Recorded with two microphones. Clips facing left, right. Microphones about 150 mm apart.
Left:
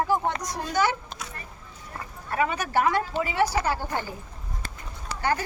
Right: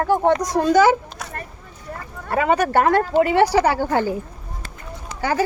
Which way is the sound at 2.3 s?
90° right.